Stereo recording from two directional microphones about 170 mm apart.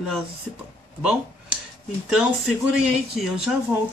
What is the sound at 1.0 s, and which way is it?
Speech, 5° right (ahead or behind).